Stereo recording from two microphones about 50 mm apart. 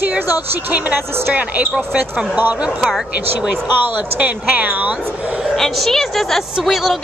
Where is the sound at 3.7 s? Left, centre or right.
Right.